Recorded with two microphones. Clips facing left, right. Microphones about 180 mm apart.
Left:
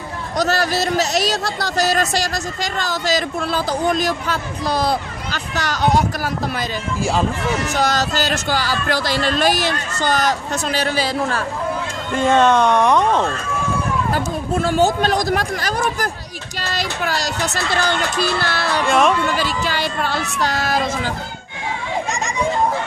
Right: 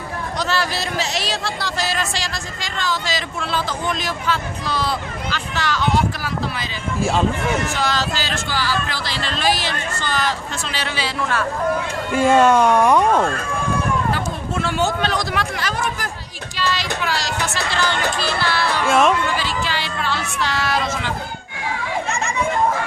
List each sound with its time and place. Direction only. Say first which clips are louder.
0.3 s speech: left 5 dB; 40° left (ahead or behind)
7.7 s speech: left 3 dB; 40° left (ahead or behind)
12.1 s speech: right 1 dB; 10° right (ahead or behind)
14.1 s speech: left 3 dB; 40° left (ahead or behind)
18.9 s speech: even; centre (ahead or behind)
19.4 s speech: left 3 dB; 45° left (ahead or behind)